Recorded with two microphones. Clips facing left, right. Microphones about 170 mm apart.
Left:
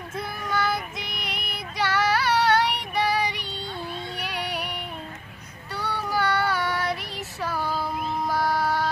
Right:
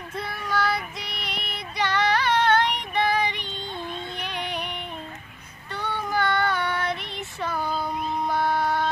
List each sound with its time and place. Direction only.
0.1 s child singing: centre (ahead or behind)
4.2 s music: 10° left (ahead or behind)
5.9 s child singing: 5° left (ahead or behind)
7.8 s music: 5° left (ahead or behind)